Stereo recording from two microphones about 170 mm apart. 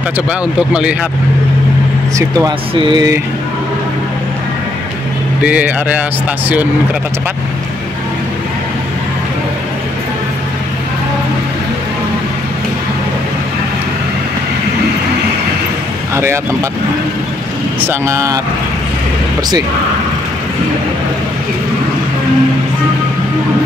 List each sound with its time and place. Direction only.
0.3 s speech: 5° right (ahead or behind)
2.1 s a sound: 20° right (ahead or behind)
5.4 s speech: 10° right (ahead or behind)
17.7 s speech: 15° right (ahead or behind)